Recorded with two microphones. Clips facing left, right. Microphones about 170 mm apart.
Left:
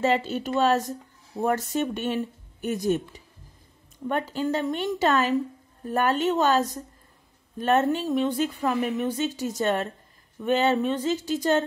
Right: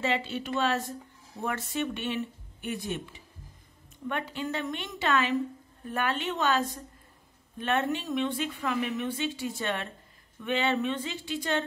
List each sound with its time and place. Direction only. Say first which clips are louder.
0.0 s speech: left 6 dB; 40° left (ahead or behind)